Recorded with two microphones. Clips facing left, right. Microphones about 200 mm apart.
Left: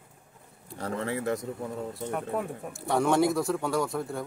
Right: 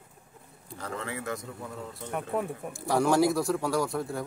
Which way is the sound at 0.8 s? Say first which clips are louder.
Left 5 dB; 35° left (ahead or behind).